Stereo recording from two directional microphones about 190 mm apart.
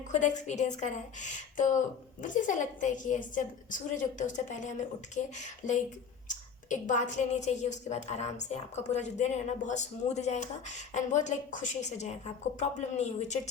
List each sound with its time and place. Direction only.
0.1 s a woman's voice: 40° left (ahead or behind)